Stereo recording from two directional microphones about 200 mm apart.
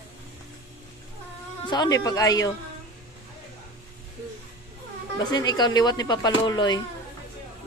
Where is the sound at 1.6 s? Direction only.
20° left (ahead or behind).